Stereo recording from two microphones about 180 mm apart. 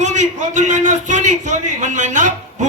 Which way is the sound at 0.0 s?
40° right (ahead or behind).